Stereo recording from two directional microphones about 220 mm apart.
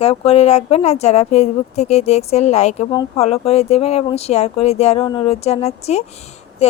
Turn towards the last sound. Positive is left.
turn(degrees=30)  # may be behind; listen again after turning